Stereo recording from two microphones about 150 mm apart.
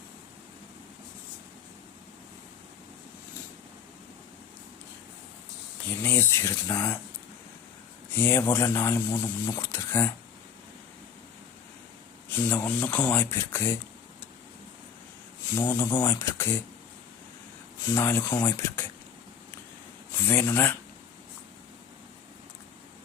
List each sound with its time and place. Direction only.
5.9 s speech: 15° left (ahead or behind)
8.1 s speech: 15° left (ahead or behind)
12.3 s speech: 15° left (ahead or behind)
15.5 s speech: 15° left (ahead or behind)
17.9 s speech: 15° left (ahead or behind)
20.1 s speech: 15° left (ahead or behind)